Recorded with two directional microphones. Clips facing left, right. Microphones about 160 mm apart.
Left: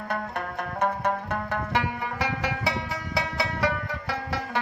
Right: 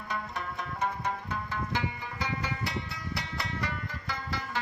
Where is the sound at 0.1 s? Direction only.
60° left (ahead or behind).